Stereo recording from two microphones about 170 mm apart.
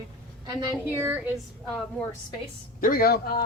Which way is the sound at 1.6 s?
5° left (ahead or behind).